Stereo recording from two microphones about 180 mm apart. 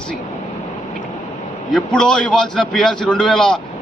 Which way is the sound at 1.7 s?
5° left (ahead or behind).